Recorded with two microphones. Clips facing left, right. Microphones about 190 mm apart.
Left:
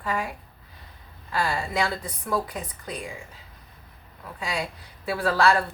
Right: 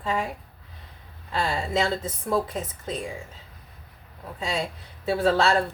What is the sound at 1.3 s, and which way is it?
A woman's voice, 25° right (ahead or behind).